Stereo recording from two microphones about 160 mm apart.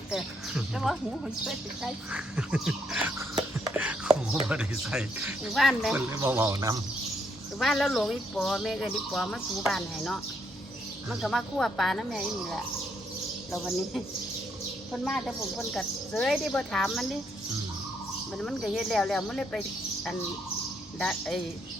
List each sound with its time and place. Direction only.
0.1 s speech: 5° right (ahead or behind)
3.8 s a sound: 10° right (ahead or behind)
4.4 s speech: 5° right (ahead or behind)
6.1 s speech: 15° right (ahead or behind)
7.6 s speech: centre (ahead or behind)
15.0 s speech: centre (ahead or behind)
18.3 s speech: centre (ahead or behind)
21.0 s speech: centre (ahead or behind)